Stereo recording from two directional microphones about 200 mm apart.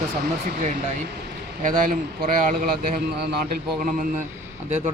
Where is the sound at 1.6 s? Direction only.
40° right (ahead or behind).